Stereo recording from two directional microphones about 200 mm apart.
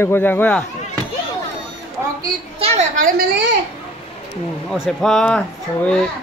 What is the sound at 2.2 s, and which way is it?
Children playing, 30° right (ahead or behind).